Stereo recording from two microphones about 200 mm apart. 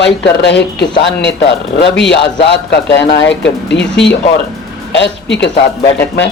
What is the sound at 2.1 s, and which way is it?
A man's voice, 60° left (ahead or behind).